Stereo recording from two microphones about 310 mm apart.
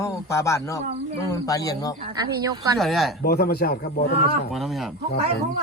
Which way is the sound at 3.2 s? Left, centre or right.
Left.